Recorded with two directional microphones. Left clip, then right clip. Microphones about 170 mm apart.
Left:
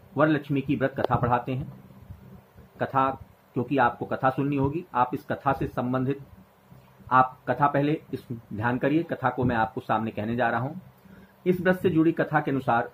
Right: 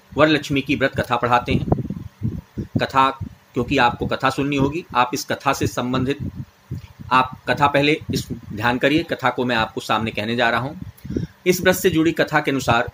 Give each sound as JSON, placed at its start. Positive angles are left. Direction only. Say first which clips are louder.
{"t": 0.1, "sound": "speech", "louder": "right 7 dB", "side_deg": -20}
{"t": 2.8, "sound": "speech", "louder": "right 7 dB", "side_deg": -20}